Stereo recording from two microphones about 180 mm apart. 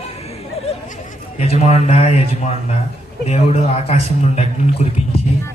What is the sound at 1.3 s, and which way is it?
A man's voice, 35° left (ahead or behind).